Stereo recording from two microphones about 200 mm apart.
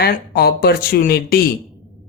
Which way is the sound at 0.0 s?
50° left (ahead or behind).